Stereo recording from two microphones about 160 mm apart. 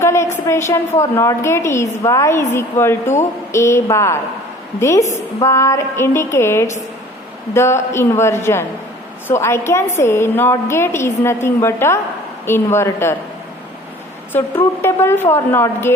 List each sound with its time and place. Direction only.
0.0 s a woman's voice: 15° left (ahead or behind)
14.3 s a woman's voice: 15° left (ahead or behind)